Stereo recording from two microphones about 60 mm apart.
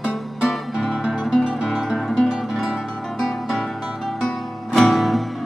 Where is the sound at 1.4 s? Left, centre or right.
Centre.